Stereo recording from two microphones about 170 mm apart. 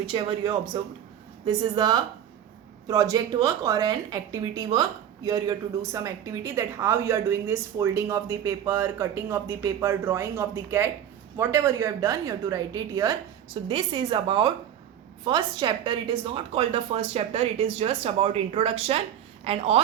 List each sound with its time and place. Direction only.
0.0 s a woman's voice: 30° right (ahead or behind)